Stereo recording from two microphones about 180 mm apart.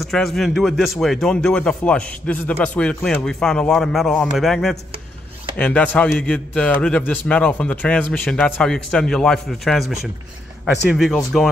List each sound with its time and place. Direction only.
0.0 s a man's voice: centre (ahead or behind)